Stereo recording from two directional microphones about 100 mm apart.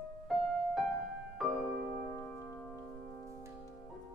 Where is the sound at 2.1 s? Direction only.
25° left (ahead or behind).